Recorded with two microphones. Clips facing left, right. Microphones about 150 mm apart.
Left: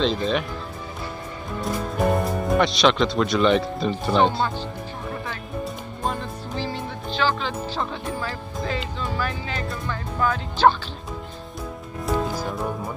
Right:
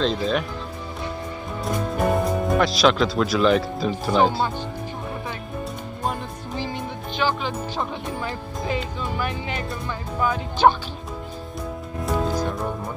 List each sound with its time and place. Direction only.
0.0 s speech: centre (ahead or behind)
1.6 s speech: centre (ahead or behind)
6.6 s speech: 15° right (ahead or behind)
12.1 s music: centre (ahead or behind)